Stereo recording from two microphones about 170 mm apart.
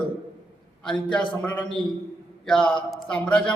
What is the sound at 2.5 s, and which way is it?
Speech, 5° left (ahead or behind).